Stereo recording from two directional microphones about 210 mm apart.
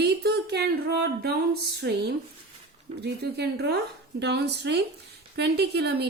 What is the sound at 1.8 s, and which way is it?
A woman's voice, 50° right (ahead or behind).